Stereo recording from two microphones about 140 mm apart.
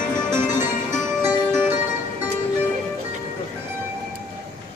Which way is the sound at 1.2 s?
15° right (ahead or behind).